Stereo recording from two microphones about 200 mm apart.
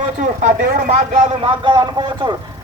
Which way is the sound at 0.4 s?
35° right (ahead or behind).